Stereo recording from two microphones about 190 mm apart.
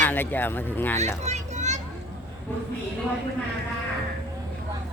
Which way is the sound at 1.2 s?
35° right (ahead or behind).